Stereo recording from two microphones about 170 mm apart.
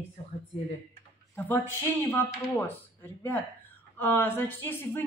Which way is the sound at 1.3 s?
10° left (ahead or behind).